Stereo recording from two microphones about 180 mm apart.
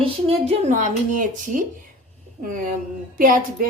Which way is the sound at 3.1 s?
50° right (ahead or behind).